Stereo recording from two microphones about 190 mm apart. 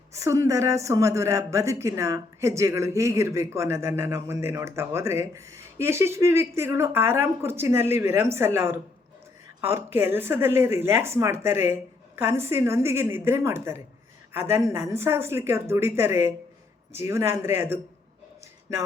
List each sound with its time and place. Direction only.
0.1 s a woman's voice: 15° right (ahead or behind)